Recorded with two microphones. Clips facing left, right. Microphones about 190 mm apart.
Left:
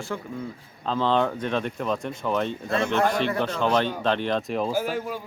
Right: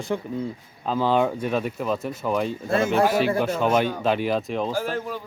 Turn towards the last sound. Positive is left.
turn(degrees=10)  # may be behind; listen again after turning